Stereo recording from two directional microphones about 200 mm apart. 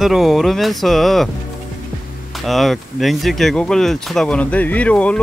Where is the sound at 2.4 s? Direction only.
Centre (ahead or behind).